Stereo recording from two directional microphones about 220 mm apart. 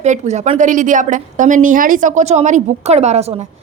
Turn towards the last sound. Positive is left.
turn(degrees=-30)  # may be behind; listen again after turning